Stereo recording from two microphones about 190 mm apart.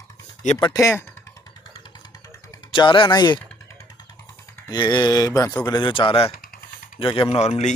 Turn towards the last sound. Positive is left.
turn(degrees=35)  # may be behind; listen again after turning